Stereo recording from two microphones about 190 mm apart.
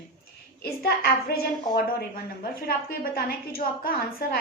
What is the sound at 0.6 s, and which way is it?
A woman's voice, 55° left (ahead or behind).